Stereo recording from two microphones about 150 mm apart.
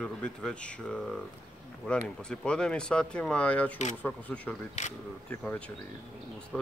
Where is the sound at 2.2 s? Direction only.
5° left (ahead or behind).